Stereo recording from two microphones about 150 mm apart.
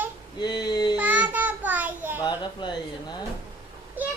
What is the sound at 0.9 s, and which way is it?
Child singing, 10° right (ahead or behind).